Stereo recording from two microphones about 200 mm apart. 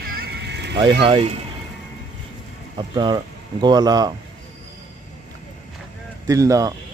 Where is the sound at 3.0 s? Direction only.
20° right (ahead or behind).